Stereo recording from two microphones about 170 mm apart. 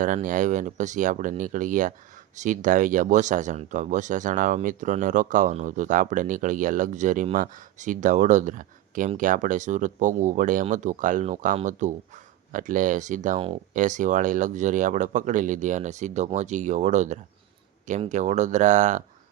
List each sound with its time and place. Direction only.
0.0 s speech: 50° right (ahead or behind)